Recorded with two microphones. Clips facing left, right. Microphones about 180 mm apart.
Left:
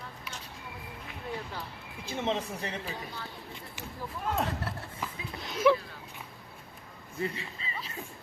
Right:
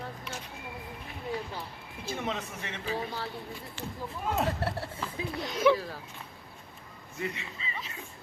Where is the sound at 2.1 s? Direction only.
25° left (ahead or behind).